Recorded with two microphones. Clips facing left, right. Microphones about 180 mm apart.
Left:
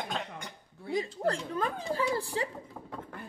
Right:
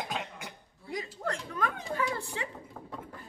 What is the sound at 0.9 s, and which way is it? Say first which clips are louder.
Speech: left 5 dB; 30° left (ahead or behind).